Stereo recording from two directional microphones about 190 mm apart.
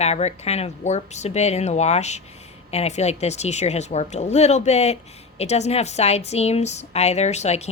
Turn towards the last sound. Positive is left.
turn(degrees=35)  # may be behind; listen again after turning